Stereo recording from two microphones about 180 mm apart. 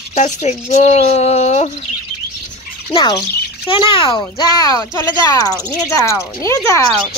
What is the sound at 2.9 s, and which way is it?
Speech, 25° left (ahead or behind).